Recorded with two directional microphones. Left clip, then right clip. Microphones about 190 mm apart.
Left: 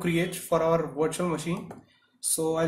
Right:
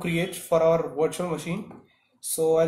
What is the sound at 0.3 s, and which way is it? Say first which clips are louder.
Speech: right 6 dB; 10° left (ahead or behind).